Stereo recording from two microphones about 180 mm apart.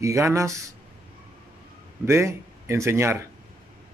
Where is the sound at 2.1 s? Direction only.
15° right (ahead or behind).